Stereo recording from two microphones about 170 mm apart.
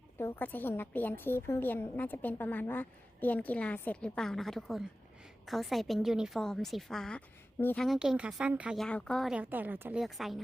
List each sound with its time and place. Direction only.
0.2 s a woman's voice: 15° left (ahead or behind)
7.9 s speech: 5° right (ahead or behind)
10.0 s a woman's voice: centre (ahead or behind)